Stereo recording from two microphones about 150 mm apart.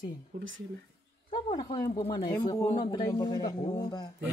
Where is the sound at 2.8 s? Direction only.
30° left (ahead or behind).